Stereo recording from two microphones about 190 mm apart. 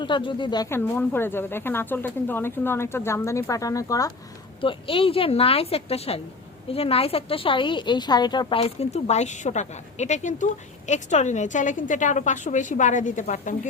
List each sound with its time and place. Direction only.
0.0 s speech: 25° left (ahead or behind)
4.6 s a woman's voice: 25° left (ahead or behind)